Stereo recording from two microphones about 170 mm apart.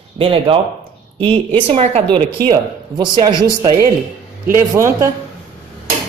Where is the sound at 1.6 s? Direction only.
35° right (ahead or behind).